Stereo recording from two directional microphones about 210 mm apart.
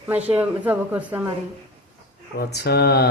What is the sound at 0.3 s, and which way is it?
A woman's voice, 10° right (ahead or behind).